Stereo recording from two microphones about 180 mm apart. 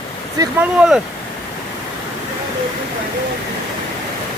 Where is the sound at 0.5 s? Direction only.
5° right (ahead or behind).